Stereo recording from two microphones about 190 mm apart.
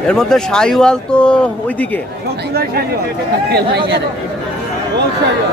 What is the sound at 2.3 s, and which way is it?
Speech, 60° right (ahead or behind).